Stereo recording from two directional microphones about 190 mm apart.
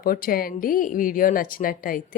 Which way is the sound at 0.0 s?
50° left (ahead or behind).